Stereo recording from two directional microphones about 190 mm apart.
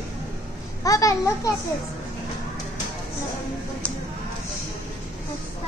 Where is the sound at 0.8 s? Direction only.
15° left (ahead or behind).